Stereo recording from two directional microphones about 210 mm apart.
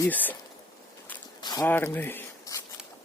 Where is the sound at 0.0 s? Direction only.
10° left (ahead or behind).